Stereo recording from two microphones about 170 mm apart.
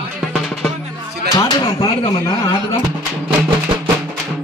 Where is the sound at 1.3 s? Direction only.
25° left (ahead or behind).